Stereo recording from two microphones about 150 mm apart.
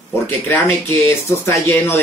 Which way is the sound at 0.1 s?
15° left (ahead or behind).